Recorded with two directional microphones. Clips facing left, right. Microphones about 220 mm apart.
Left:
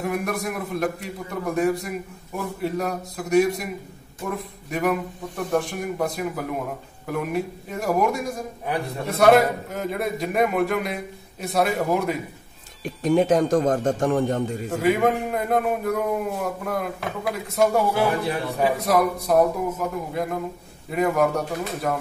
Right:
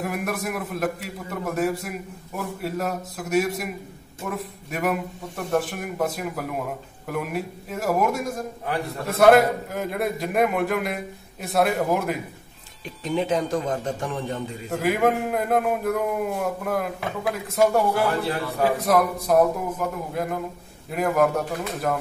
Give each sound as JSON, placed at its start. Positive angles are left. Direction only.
{"t": 0.0, "sound": "a man's voice", "side_deg": -5}
{"t": 12.8, "sound": "speech", "side_deg": 45}
{"t": 14.7, "sound": "a man's voice", "side_deg": 0}